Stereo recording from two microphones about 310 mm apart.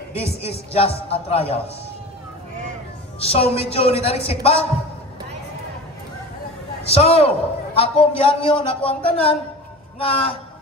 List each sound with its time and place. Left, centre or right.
0.4 s a woman's voice: centre
3.2 s a woman's voice: centre
6.9 s a man's voice: centre